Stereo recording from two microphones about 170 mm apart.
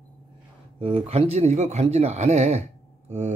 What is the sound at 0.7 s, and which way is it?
A man's voice, 35° right (ahead or behind).